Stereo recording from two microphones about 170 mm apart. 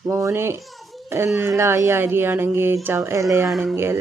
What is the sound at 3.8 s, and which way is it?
Speech, 15° right (ahead or behind).